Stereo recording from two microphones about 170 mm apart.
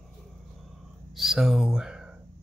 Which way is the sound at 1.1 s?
Centre (ahead or behind).